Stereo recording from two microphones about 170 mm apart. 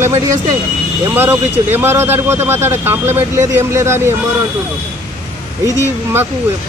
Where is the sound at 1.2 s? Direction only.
10° right (ahead or behind).